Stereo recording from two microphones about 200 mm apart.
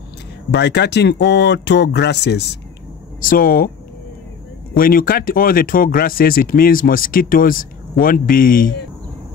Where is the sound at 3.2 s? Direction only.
45° left (ahead or behind).